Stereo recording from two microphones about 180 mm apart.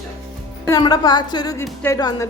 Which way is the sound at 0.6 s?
20° left (ahead or behind).